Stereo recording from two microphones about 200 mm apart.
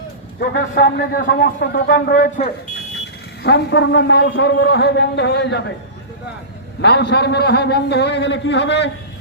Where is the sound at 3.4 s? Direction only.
60° left (ahead or behind).